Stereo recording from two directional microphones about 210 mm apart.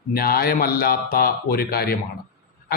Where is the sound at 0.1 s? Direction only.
45° left (ahead or behind).